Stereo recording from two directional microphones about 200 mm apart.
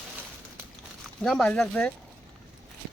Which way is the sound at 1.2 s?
5° left (ahead or behind).